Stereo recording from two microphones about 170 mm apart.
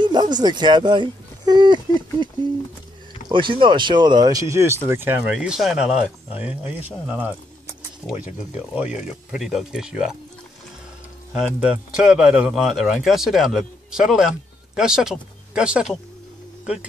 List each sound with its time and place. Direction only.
0.0 s speech: 25° right (ahead or behind)
3.3 s a man's voice: 30° right (ahead or behind); by 10.1 s 5° right (ahead or behind)
11.3 s a man's voice: 5° right (ahead or behind)